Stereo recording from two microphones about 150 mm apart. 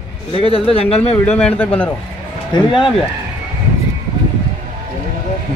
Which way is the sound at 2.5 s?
35° left (ahead or behind).